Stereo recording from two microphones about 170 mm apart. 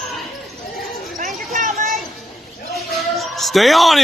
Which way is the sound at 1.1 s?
50° right (ahead or behind).